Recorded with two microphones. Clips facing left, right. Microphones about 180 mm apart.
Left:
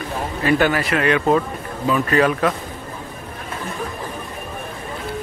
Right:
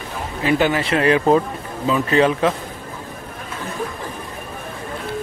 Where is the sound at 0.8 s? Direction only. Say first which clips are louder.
Right 2 dB; 30° right (ahead or behind).